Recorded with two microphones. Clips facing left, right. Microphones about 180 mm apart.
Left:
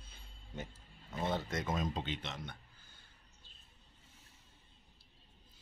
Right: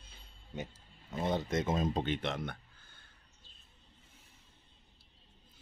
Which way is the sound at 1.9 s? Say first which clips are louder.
Right 7 dB; 55° right (ahead or behind).